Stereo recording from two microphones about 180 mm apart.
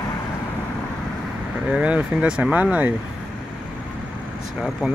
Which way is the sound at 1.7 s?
5° right (ahead or behind).